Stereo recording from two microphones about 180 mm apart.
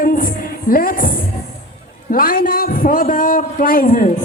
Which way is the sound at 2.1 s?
50° left (ahead or behind).